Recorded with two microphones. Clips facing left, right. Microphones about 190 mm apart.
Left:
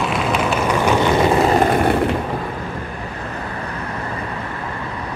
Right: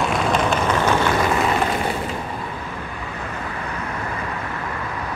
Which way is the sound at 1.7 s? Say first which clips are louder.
Left 7 dB; 55° left (ahead or behind).